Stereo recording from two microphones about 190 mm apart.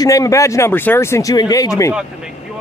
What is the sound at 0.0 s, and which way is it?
A man's voice, 20° left (ahead or behind).